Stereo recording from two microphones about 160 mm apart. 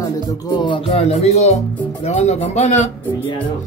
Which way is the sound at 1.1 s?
40° left (ahead or behind).